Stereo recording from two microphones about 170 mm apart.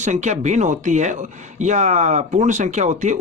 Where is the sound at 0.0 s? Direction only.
45° right (ahead or behind).